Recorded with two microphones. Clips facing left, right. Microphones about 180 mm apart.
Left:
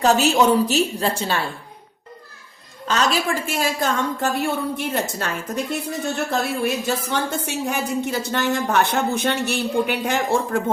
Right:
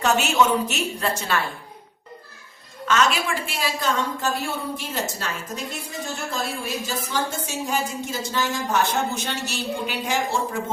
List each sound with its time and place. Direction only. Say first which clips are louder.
0.0 s a woman's voice: left 4 dB; 35° left (ahead or behind)
2.8 s a woman's voice: left 1 dB; 35° left (ahead or behind); by 10.6 s 55° left (ahead or behind)